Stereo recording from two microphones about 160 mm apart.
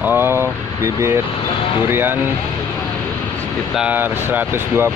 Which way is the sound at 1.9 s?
15° right (ahead or behind).